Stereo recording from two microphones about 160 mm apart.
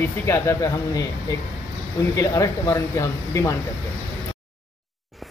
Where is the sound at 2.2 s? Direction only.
20° left (ahead or behind).